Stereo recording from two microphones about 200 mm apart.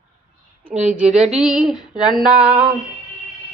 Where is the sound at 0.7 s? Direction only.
35° right (ahead or behind).